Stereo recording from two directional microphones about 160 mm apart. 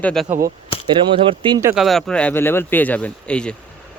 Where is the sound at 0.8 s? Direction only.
30° right (ahead or behind).